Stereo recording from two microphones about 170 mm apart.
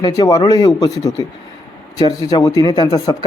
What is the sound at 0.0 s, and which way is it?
A man's voice, 20° left (ahead or behind).